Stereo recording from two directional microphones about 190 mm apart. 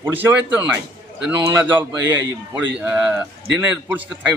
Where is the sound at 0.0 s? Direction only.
10° right (ahead or behind).